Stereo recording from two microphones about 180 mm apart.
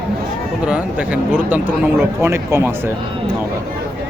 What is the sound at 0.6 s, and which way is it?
Speech, 5° right (ahead or behind).